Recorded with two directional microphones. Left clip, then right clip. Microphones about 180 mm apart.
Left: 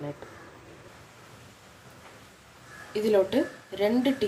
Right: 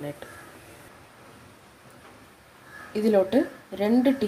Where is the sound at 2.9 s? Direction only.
35° right (ahead or behind).